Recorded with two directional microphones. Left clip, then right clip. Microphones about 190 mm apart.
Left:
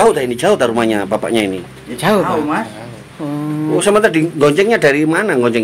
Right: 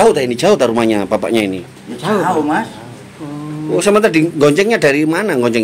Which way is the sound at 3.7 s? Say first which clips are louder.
Right 1 dB; 15° right (ahead or behind).